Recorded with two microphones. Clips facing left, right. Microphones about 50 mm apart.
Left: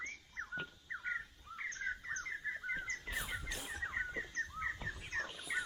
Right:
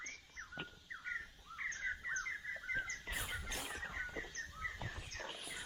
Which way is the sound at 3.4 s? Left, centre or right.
Right.